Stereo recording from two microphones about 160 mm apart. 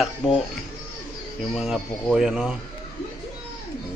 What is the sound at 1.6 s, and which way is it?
A man's voice, centre (ahead or behind).